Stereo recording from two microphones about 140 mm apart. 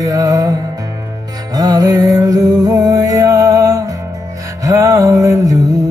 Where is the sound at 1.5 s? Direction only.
25° right (ahead or behind).